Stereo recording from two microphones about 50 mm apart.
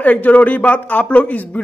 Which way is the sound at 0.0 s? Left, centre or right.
Left.